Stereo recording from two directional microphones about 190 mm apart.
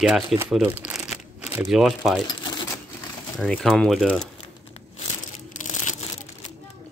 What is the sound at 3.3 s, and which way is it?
Speech, centre (ahead or behind).